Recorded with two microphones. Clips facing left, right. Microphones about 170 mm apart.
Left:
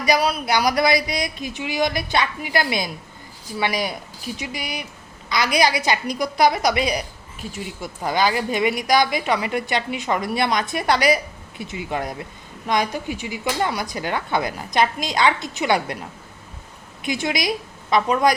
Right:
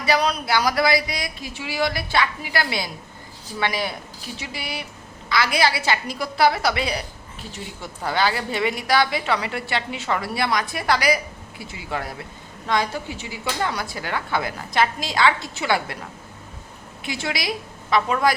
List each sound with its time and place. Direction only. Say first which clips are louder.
0.0 s a woman's voice: left 1 dB; 10° left (ahead or behind)
0.4 s a woman's voice: left 2 dB; 20° left (ahead or behind)
17.0 s a woman's voice: left 4 dB; 15° left (ahead or behind)